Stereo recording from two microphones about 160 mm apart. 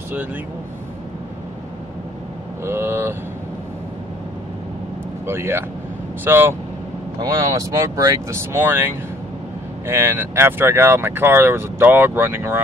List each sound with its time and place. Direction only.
2.6 s speech: 15° right (ahead or behind)
5.2 s speech: 15° right (ahead or behind)